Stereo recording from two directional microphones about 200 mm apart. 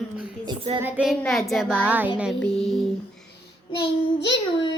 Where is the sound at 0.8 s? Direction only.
10° right (ahead or behind).